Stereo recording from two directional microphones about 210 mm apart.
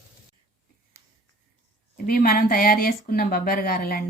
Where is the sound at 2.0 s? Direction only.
45° left (ahead or behind).